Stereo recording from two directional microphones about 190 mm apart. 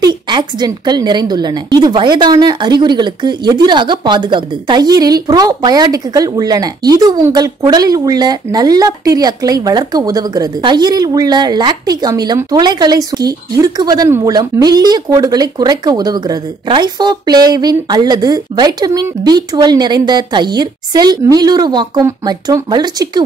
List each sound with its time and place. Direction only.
0.0 s a woman's voice: 20° right (ahead or behind)